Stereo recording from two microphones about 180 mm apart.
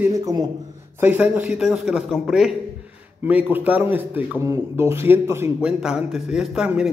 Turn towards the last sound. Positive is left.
turn(degrees=-5)  # may be behind; listen again after turning